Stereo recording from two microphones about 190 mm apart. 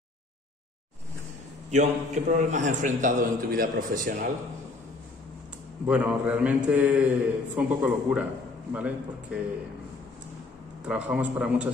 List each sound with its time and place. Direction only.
1.7 s a man's voice: 40° right (ahead or behind)
5.9 s a man's voice: 5° right (ahead or behind)
10.9 s a man's voice: 5° right (ahead or behind)